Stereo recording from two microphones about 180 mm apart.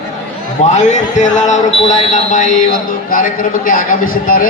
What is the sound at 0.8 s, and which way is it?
A man's voice, 40° left (ahead or behind).